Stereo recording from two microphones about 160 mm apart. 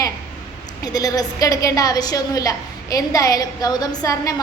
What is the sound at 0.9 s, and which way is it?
A woman's voice, 20° left (ahead or behind).